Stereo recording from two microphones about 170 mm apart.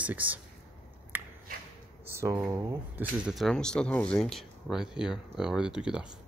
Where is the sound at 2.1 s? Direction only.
15° right (ahead or behind).